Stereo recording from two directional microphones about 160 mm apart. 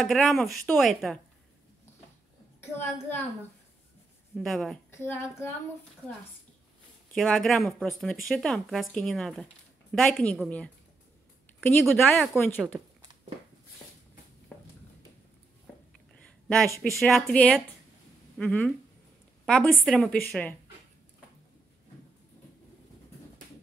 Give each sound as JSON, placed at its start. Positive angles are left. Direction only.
{"t": 0.0, "sound": "speech", "side_deg": 0}
{"t": 2.6, "sound": "speech", "side_deg": 15}
{"t": 4.4, "sound": "speech", "side_deg": 0}
{"t": 4.9, "sound": "speech", "side_deg": 15}
{"t": 7.2, "sound": "speech", "side_deg": 0}
{"t": 11.9, "sound": "speech", "side_deg": 10}
{"t": 16.3, "sound": "a sound", "side_deg": 5}
{"t": 17.0, "sound": "a woman's voice", "side_deg": 5}